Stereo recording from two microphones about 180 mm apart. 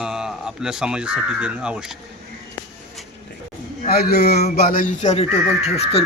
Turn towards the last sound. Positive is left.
turn(degrees=35)  # may be behind; listen again after turning